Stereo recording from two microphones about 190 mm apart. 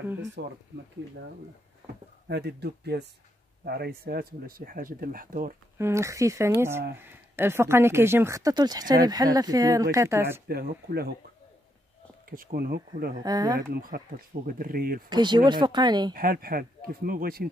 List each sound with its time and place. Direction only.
0.4 s speech: 65° right (ahead or behind)
2.2 s speech: 60° right (ahead or behind)
5.8 s speech: 15° right (ahead or behind)
10.5 s speech: 55° right (ahead or behind)
12.3 s speech: 50° right (ahead or behind)
13.2 s speech: 20° right (ahead or behind)
13.6 s speech: 50° right (ahead or behind)
15.0 s speech: 20° right (ahead or behind)
16.1 s speech: 50° right (ahead or behind)